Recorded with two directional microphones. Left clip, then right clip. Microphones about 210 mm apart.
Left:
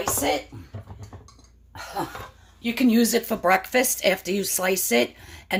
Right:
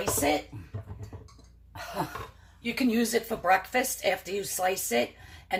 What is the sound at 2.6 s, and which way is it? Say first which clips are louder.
Speech: left 6 dB; 50° left (ahead or behind).